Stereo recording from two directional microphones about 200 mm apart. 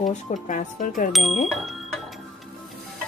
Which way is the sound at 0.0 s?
40° left (ahead or behind).